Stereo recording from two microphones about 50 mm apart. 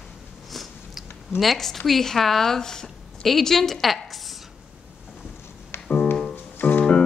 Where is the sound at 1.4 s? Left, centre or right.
Centre.